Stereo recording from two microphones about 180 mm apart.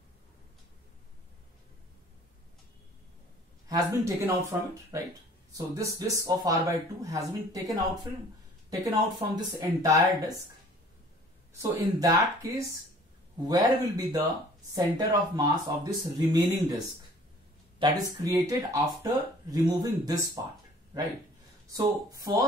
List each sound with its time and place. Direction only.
3.6 s speech: 20° right (ahead or behind)
11.5 s speech: 20° right (ahead or behind)
21.7 s speech: 20° right (ahead or behind)